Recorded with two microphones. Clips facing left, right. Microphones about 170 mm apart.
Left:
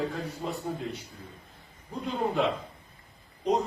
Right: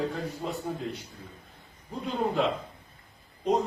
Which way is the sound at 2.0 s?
Centre (ahead or behind).